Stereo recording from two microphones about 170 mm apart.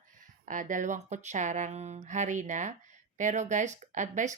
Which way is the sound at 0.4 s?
50° right (ahead or behind).